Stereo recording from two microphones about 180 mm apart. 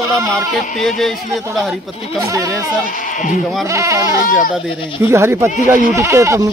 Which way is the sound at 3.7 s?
15° right (ahead or behind).